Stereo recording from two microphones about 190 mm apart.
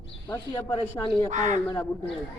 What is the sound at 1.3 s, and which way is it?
Speech, 40° right (ahead or behind).